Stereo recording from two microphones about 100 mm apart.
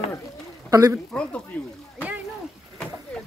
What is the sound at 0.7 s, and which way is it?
Speech, 35° right (ahead or behind).